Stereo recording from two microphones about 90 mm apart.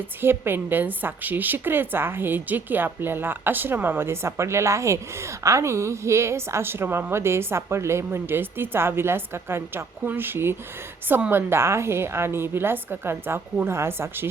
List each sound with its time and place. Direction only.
0.2 s a woman's voice: 25° right (ahead or behind)